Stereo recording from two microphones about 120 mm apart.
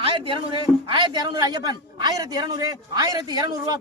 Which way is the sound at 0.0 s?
50° right (ahead or behind).